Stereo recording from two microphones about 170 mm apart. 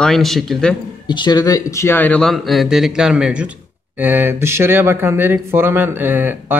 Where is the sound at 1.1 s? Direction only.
25° left (ahead or behind).